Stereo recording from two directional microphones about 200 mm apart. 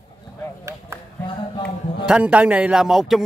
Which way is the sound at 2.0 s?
5° right (ahead or behind).